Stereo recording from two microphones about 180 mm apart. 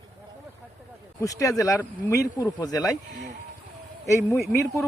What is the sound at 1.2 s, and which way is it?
Speech, 20° left (ahead or behind).